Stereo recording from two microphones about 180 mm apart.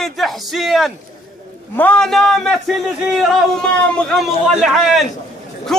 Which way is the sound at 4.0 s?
Centre (ahead or behind).